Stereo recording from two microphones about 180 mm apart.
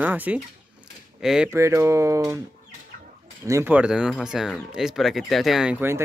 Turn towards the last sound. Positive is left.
turn(degrees=-10)  # may be behind; listen again after turning